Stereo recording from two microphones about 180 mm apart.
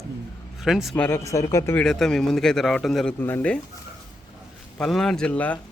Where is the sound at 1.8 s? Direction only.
5° left (ahead or behind).